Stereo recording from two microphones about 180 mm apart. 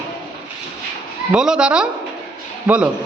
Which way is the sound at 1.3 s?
5° right (ahead or behind).